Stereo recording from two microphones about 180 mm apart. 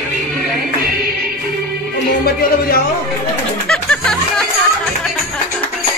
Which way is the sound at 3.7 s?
5° left (ahead or behind).